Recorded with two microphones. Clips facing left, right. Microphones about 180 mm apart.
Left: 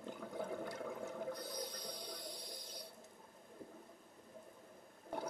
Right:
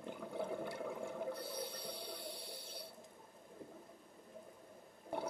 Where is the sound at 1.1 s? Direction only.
5° right (ahead or behind).